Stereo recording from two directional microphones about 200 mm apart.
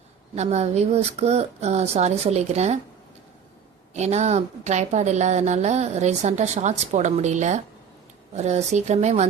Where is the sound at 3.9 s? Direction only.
35° right (ahead or behind).